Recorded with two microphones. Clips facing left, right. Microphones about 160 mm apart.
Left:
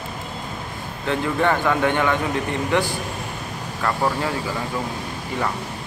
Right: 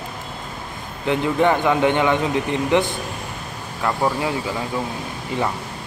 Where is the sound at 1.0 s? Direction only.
15° right (ahead or behind).